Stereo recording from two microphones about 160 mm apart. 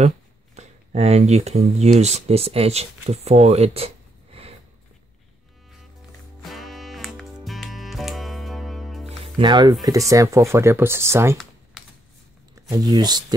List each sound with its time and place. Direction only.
0.6 s speech: 45° right (ahead or behind)
6.4 s music: centre (ahead or behind)
9.2 s speech: 30° right (ahead or behind)
12.7 s speech: 25° right (ahead or behind)